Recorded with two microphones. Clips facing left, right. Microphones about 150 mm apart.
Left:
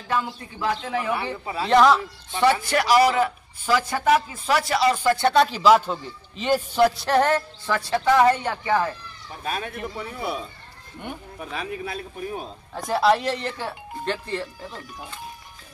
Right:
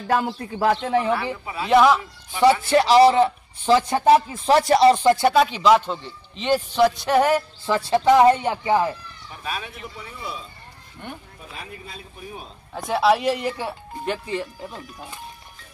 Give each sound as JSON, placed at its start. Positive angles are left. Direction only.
{"t": 0.1, "sound": "speech", "side_deg": -45}
{"t": 1.4, "sound": "speech", "side_deg": 35}
{"t": 1.7, "sound": "a man's voice", "side_deg": -5}
{"t": 2.7, "sound": "a man's voice", "side_deg": -25}
{"t": 5.0, "sound": "speech", "side_deg": -15}
{"t": 5.3, "sound": "a man's voice", "side_deg": 0}
{"t": 7.1, "sound": "a man's voice", "side_deg": -5}
{"t": 9.4, "sound": "speech", "side_deg": 45}
{"t": 11.3, "sound": "speech", "side_deg": 80}
{"t": 12.7, "sound": "speech", "side_deg": -5}